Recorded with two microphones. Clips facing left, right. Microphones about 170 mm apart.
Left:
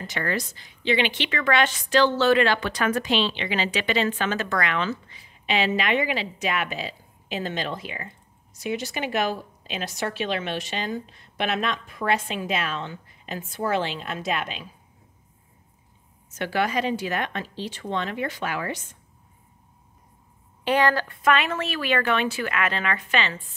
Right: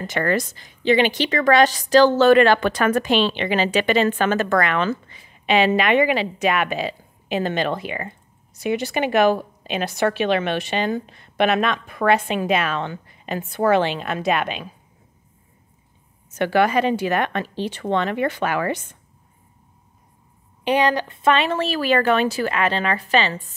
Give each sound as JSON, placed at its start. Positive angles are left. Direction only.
{"t": 0.0, "sound": "a woman's voice", "side_deg": -50}
{"t": 16.3, "sound": "a woman's voice", "side_deg": -60}
{"t": 20.6, "sound": "speech", "side_deg": -20}